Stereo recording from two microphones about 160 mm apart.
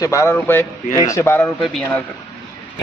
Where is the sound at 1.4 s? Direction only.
5° left (ahead or behind).